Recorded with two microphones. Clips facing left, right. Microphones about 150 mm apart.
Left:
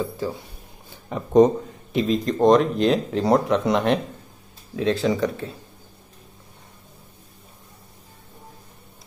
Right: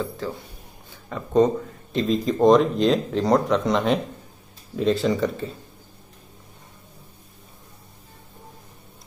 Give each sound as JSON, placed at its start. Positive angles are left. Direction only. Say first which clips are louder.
{"t": 1.0, "sound": "speech", "louder": "left 3 dB", "side_deg": 20}
{"t": 2.0, "sound": "speech", "louder": "right 1 dB", "side_deg": 0}